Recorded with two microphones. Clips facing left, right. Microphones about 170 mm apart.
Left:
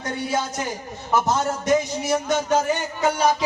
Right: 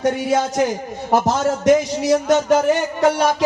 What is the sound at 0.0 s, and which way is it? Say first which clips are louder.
A man's voice: right 7 dB; 75° right (ahead or behind).